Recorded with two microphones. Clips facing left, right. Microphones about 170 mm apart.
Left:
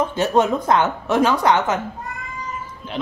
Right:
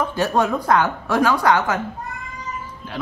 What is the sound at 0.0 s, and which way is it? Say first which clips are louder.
A woman's voice: left 2 dB; 20° left (ahead or behind).